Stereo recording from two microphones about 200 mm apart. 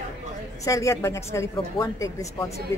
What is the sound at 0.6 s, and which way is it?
A woman's voice, 15° left (ahead or behind).